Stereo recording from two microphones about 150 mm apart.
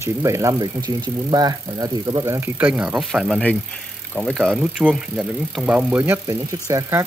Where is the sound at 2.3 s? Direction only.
15° right (ahead or behind).